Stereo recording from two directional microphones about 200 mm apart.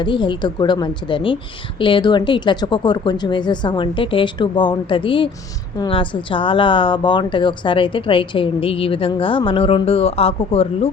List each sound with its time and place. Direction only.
0.0 s a woman's voice: 25° left (ahead or behind)